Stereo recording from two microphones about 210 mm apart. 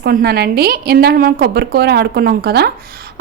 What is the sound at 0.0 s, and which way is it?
A woman's voice, 50° right (ahead or behind).